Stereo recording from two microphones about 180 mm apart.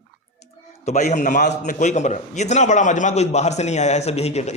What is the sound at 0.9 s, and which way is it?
A man's voice, 40° left (ahead or behind).